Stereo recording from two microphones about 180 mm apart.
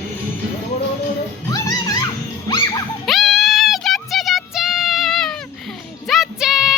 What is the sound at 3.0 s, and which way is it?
Music, centre (ahead or behind).